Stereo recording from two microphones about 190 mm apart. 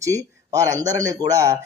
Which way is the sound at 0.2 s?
20° right (ahead or behind).